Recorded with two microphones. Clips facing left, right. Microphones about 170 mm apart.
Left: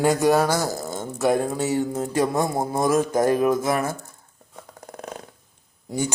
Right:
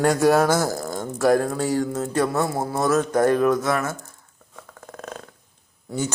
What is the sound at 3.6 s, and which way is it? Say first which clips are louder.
Speech: even; 30° left (ahead or behind).